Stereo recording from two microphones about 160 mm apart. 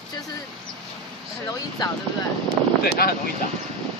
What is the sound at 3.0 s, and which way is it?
Speech, 70° left (ahead or behind).